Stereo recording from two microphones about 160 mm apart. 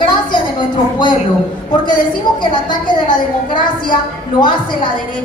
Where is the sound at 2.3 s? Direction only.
30° left (ahead or behind).